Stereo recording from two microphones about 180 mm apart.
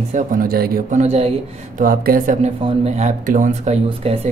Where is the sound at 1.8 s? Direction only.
55° right (ahead or behind).